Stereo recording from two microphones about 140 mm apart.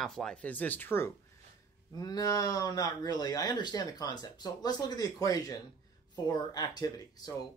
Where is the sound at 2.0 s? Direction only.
25° left (ahead or behind).